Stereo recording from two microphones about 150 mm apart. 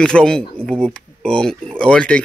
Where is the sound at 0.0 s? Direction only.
5° left (ahead or behind).